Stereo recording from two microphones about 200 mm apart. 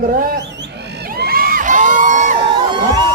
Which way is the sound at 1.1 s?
50° right (ahead or behind).